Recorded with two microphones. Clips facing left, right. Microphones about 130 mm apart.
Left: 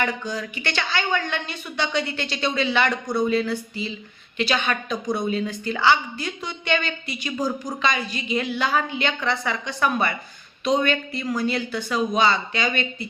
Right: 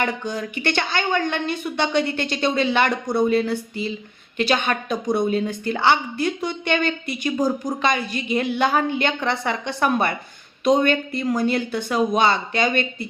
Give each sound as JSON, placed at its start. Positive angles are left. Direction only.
{"t": 0.3, "sound": "a woman's voice", "side_deg": -55}